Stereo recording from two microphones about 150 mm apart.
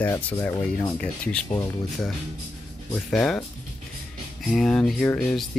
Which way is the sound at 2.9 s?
5° left (ahead or behind).